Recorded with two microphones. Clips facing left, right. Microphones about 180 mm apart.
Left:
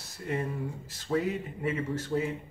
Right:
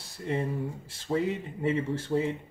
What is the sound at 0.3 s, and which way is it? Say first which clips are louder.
Speech: right 2 dB; 25° right (ahead or behind).